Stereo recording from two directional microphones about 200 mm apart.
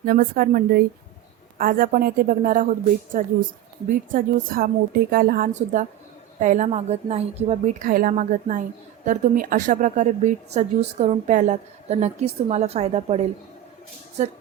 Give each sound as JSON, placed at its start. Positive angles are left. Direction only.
{"t": 0.0, "sound": "a woman's voice", "side_deg": -50}